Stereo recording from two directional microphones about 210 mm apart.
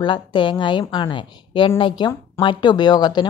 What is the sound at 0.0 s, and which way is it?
A woman's voice, 20° left (ahead or behind).